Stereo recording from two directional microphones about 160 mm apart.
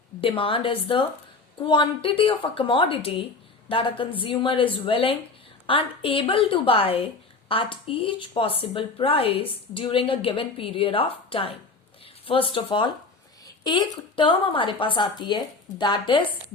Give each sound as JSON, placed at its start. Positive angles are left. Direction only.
{"t": 0.2, "sound": "speech", "side_deg": 35}